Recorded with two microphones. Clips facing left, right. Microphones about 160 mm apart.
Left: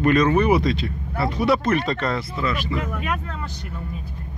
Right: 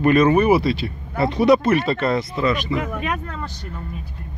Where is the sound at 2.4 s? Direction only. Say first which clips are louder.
Right 4 dB; 20° right (ahead or behind).